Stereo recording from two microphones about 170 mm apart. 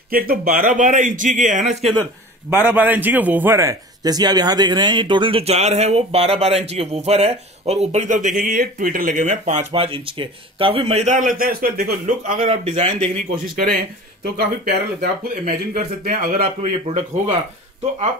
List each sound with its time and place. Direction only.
0.1 s speech: 55° right (ahead or behind)
2.5 s a man's voice: 10° right (ahead or behind); by 9.7 s 45° right (ahead or behind)
9.7 s a man's voice: 30° right (ahead or behind); by 12.0 s 60° right (ahead or behind)
12.3 s speech: 45° right (ahead or behind)
14.2 s speech: 65° right (ahead or behind)